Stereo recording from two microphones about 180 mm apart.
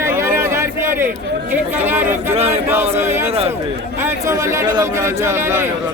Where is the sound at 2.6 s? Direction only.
15° right (ahead or behind).